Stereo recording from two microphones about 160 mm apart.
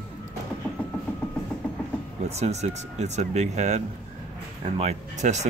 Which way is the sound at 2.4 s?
45° right (ahead or behind).